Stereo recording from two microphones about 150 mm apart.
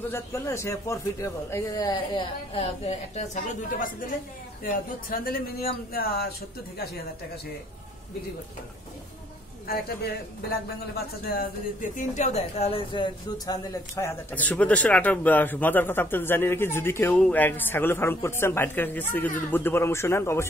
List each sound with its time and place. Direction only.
0.1 s speech: 20° left (ahead or behind)
2.5 s a woman's voice: 40° left (ahead or behind); by 4.1 s 60° left (ahead or behind)
4.6 s speech: 75° left (ahead or behind)
9.7 s speech: 90° left
12.0 s a woman's voice: 50° left (ahead or behind); by 13.6 s 30° left (ahead or behind)
13.9 s speech: 15° left (ahead or behind)